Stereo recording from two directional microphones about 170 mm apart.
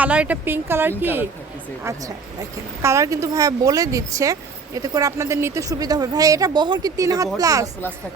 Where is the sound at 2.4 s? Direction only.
15° right (ahead or behind).